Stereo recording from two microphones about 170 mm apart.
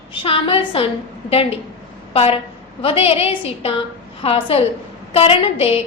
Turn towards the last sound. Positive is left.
turn(degrees=35)  # may be behind; listen again after turning